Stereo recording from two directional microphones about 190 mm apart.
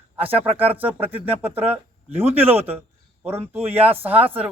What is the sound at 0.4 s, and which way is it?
Speech, 30° right (ahead or behind).